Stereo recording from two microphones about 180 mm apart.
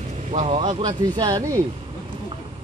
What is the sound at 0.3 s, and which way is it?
Speech, 35° right (ahead or behind).